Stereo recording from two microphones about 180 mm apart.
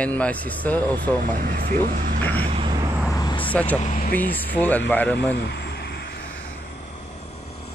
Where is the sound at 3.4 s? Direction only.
10° left (ahead or behind).